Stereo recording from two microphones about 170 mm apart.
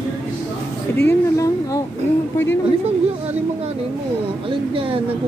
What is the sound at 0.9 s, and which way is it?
Speech, 15° left (ahead or behind).